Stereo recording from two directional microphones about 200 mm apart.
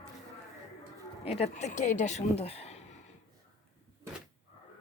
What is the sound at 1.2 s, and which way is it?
Speech, 30° left (ahead or behind).